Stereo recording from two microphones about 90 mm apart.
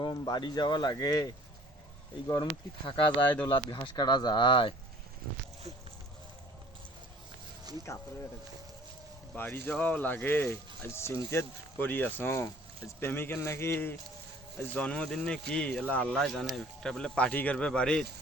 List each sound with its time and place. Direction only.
0.0 s speech: 55° left (ahead or behind)
2.8 s speech: 65° left (ahead or behind)
3.2 s speech: 15° left (ahead or behind)
3.8 s speech: 50° left (ahead or behind); by 4.7 s 70° left (ahead or behind)
7.7 s speech: 50° right (ahead or behind)
9.3 s speech: 20° left (ahead or behind)
14.6 s speech: 15° left (ahead or behind)
16.1 s speech: centre (ahead or behind)